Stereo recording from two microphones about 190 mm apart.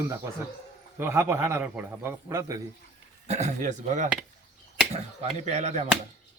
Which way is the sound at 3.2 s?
35° right (ahead or behind).